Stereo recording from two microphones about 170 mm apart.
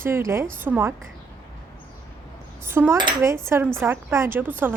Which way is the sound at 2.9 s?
20° right (ahead or behind).